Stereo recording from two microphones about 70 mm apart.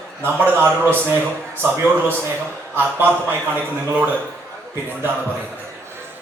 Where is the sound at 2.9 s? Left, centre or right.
Right.